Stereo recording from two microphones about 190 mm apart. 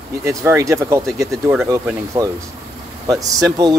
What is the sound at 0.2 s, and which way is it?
Speech, 15° right (ahead or behind).